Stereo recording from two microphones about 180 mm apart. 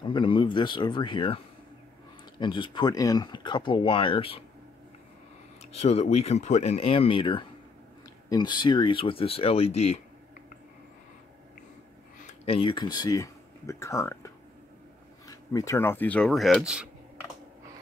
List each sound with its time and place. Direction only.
0.0 s speech: 25° left (ahead or behind)
5.6 s speech: 35° left (ahead or behind)
12.3 s speech: 30° left (ahead or behind); by 16.9 s 5° right (ahead or behind)